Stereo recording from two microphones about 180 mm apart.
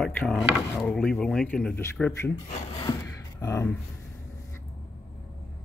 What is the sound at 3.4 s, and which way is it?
Speech, 15° left (ahead or behind).